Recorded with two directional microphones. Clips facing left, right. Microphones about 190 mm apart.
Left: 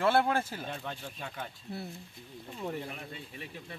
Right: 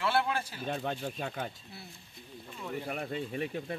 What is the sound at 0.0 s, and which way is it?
Speech, 45° left (ahead or behind).